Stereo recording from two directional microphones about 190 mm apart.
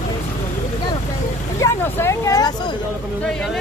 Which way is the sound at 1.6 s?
15° left (ahead or behind).